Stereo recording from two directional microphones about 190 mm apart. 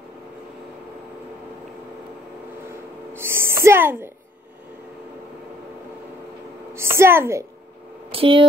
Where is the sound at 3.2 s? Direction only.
15° right (ahead or behind).